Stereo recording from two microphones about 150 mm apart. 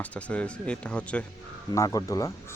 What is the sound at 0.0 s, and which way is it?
Speech, 10° left (ahead or behind).